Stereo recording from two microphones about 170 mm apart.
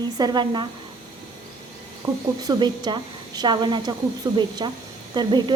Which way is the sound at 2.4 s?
25° right (ahead or behind).